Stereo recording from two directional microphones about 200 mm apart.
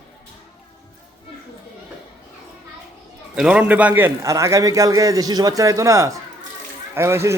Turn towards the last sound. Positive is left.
turn(degrees=-15)  # may be behind; listen again after turning